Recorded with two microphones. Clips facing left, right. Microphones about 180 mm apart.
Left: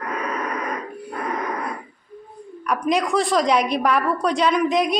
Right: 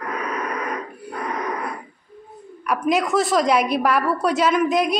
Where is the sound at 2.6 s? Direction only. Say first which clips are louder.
Right 1 dB; 5° right (ahead or behind).